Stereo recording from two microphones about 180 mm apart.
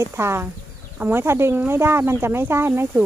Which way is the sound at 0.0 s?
15° right (ahead or behind).